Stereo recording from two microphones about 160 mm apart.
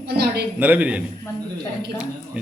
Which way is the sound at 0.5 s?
10° right (ahead or behind).